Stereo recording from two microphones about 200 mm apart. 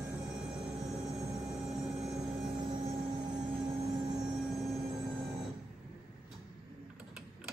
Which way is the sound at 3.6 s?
30° right (ahead or behind).